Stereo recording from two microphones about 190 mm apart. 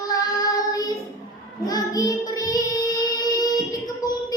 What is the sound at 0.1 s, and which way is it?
Child singing, 20° left (ahead or behind).